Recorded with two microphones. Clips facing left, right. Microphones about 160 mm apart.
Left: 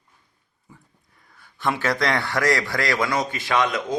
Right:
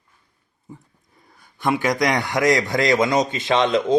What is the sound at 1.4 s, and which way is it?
A man's voice, 15° right (ahead or behind).